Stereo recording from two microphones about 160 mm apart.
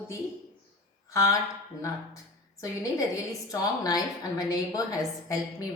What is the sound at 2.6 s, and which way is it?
A woman's voice, 20° left (ahead or behind).